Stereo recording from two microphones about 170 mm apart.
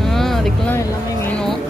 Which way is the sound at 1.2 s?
5° left (ahead or behind).